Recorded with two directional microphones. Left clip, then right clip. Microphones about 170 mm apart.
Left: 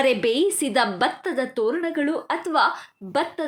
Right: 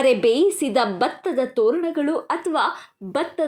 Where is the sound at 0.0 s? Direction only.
5° right (ahead or behind).